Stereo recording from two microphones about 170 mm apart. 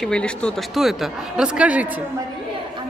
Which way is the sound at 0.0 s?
5° left (ahead or behind).